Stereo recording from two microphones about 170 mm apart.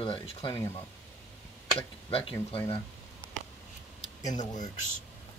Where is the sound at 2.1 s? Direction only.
35° left (ahead or behind).